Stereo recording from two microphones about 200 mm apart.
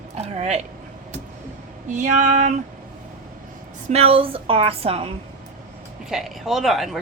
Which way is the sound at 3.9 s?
30° right (ahead or behind).